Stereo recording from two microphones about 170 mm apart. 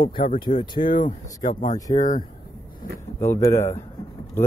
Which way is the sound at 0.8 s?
55° left (ahead or behind).